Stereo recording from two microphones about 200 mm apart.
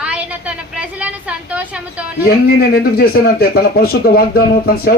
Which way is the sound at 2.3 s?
50° left (ahead or behind).